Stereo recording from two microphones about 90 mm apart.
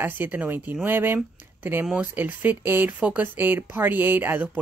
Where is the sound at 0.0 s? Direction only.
25° right (ahead or behind).